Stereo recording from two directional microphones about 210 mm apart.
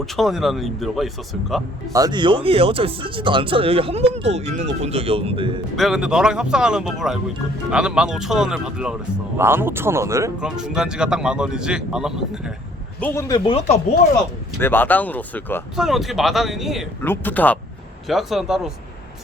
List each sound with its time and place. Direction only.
0.0 s speech: centre (ahead or behind)
1.9 s speech: 20° right (ahead or behind)
5.7 s speech: centre (ahead or behind)
10.6 s speech: 5° right (ahead or behind)
13.0 s speech: 10° left (ahead or behind)
13.5 s speech: 30° left (ahead or behind)
14.6 s speech: 10° left (ahead or behind)
15.7 s speech: centre (ahead or behind)
17.0 s speech: 10° left (ahead or behind)